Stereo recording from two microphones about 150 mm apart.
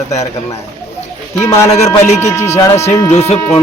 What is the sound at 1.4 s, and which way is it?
Speech, 20° left (ahead or behind).